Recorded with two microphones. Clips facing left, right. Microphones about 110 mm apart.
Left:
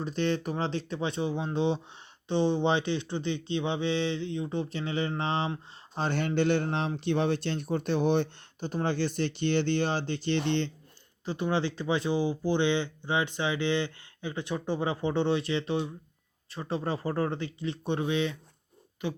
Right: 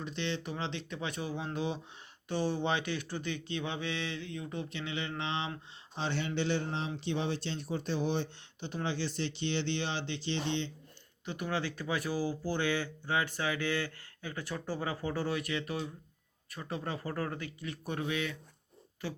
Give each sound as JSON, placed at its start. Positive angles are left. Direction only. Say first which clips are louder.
{"t": 0.0, "sound": "speech", "louder": "left 8 dB", "side_deg": 45}
{"t": 6.0, "sound": "a man's voice", "louder": "left 6 dB", "side_deg": 50}
{"t": 8.6, "sound": "speech", "louder": "left 6 dB", "side_deg": 45}
{"t": 11.3, "sound": "speech", "louder": "left 6 dB", "side_deg": 30}